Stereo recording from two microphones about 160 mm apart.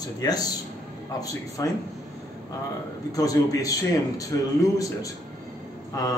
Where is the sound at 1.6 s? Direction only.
20° left (ahead or behind).